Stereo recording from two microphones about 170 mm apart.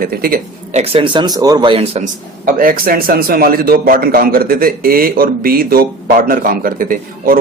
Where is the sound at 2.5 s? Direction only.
55° right (ahead or behind).